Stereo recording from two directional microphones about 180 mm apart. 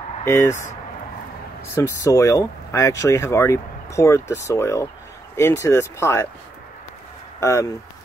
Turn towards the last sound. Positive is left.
turn(degrees=15)  # may be behind; listen again after turning